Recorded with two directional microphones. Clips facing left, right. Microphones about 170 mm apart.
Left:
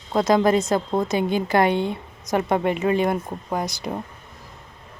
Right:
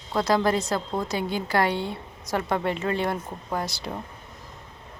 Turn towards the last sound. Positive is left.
turn(degrees=15)  # may be behind; listen again after turning